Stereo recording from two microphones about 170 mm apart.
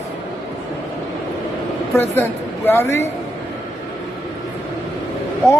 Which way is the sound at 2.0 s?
15° left (ahead or behind).